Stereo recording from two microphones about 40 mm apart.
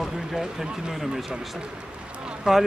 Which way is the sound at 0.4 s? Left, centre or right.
Centre.